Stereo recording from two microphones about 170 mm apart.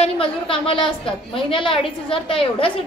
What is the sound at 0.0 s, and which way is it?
A woman's voice, 35° left (ahead or behind).